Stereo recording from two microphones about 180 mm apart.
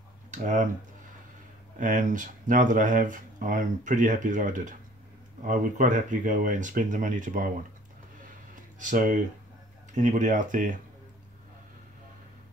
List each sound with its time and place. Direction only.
0.3 s speech: 45° right (ahead or behind)
1.8 s speech: 45° right (ahead or behind)
8.7 s speech: 45° right (ahead or behind)